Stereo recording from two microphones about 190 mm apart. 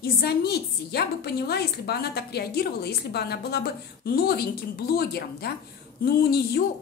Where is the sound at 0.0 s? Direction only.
55° left (ahead or behind).